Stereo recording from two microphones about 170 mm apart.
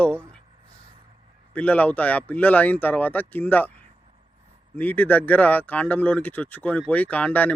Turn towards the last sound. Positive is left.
turn(degrees=10)  # may be behind; listen again after turning